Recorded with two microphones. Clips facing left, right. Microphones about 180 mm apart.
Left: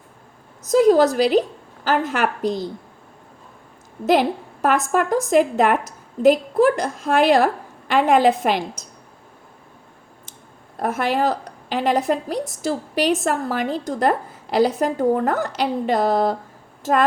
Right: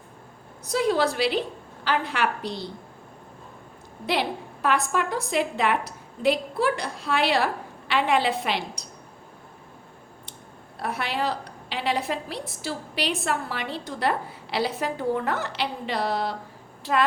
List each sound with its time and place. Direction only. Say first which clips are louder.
0.6 s a woman's voice: left 9 dB; 45° left (ahead or behind)
4.0 s a woman's voice: left 9 dB; 45° left (ahead or behind)
10.8 s a woman's voice: left 8 dB; 45° left (ahead or behind)